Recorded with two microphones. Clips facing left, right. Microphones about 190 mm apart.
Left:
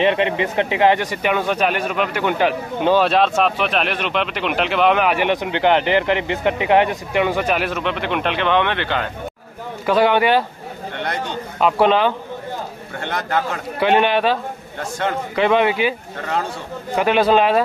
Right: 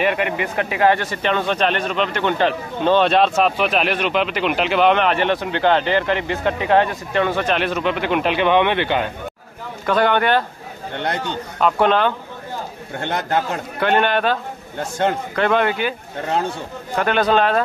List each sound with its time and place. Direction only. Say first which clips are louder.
0.0 s speech: left 3 dB; 25° left (ahead or behind); by 9.0 s 15° right (ahead or behind)
9.8 s a man's voice: left 2 dB; 5° left (ahead or behind)
11.6 s a man's voice: left 1 dB; centre (ahead or behind)
13.7 s a man's voice: left 2 dB; centre (ahead or behind)
14.8 s a man's voice: right 3 dB; 25° right (ahead or behind)
15.3 s a man's voice: left 5 dB; centre (ahead or behind)
16.9 s a man's voice: left 2 dB; 5° left (ahead or behind)